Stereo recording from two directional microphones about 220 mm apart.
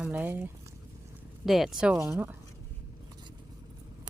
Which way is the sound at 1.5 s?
Centre (ahead or behind).